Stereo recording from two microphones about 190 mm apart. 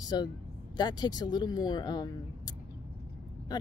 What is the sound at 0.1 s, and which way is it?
Speech, 25° left (ahead or behind).